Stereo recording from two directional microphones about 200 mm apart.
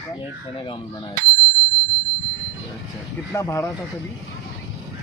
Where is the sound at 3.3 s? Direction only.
15° left (ahead or behind).